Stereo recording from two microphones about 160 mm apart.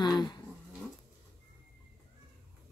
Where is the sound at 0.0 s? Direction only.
25° left (ahead or behind).